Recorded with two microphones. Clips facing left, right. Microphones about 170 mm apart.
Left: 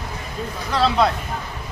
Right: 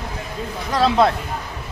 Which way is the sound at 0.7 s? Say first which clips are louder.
Right 2 dB; 50° right (ahead or behind).